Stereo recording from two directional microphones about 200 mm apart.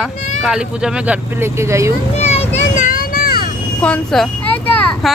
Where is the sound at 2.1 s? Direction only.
30° left (ahead or behind); by 3.4 s 50° left (ahead or behind).